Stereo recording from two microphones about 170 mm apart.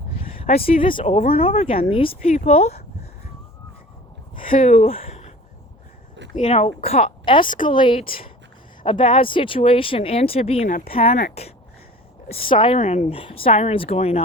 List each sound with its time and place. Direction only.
0.6 s speech: 30° left (ahead or behind)
4.4 s speech: 50° left (ahead or behind)
4.9 s a sound: 35° left (ahead or behind)
6.5 s speech: 35° left (ahead or behind)
12.4 s speech: 30° left (ahead or behind)